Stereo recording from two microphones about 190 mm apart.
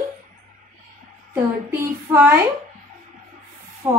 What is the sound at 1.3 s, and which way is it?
A woman's voice, 10° right (ahead or behind).